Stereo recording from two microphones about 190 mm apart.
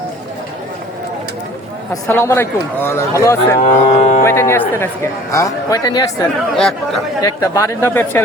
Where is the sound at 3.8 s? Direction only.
35° left (ahead or behind).